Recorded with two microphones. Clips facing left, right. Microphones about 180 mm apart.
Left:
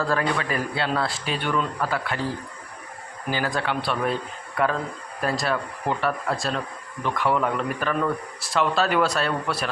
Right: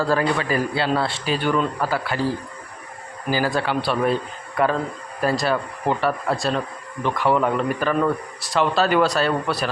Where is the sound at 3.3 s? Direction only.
5° right (ahead or behind).